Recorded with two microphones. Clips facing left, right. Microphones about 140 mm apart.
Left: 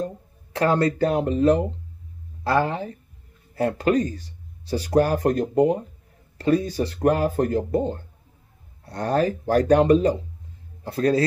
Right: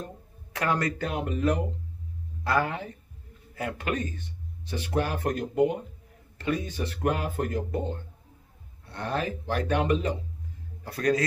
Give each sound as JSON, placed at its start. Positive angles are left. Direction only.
{"t": 0.0, "sound": "a man's voice", "side_deg": 30}